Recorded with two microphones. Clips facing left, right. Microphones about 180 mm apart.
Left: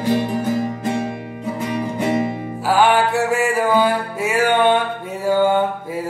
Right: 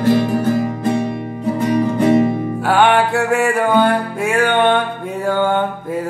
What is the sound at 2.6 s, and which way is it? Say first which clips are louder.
Music: right 1 dB; centre (ahead or behind).